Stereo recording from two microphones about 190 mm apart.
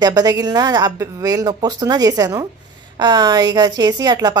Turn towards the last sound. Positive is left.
turn(degrees=-20)  # may be behind; listen again after turning